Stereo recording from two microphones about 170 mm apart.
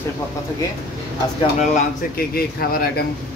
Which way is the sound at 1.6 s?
45° left (ahead or behind).